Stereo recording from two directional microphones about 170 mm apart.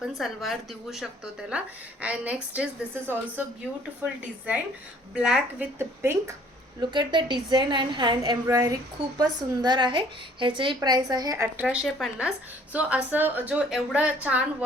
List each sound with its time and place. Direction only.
0.0 s a woman's voice: centre (ahead or behind)
5.1 s a woman's voice: 5° right (ahead or behind)
6.7 s a woman's voice: 25° right (ahead or behind)
11.6 s a woman's voice: 5° right (ahead or behind)